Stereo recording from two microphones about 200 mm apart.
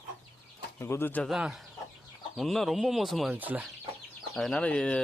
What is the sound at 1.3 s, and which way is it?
Speech, 5° right (ahead or behind).